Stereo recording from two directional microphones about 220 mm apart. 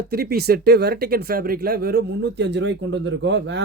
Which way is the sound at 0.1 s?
45° right (ahead or behind).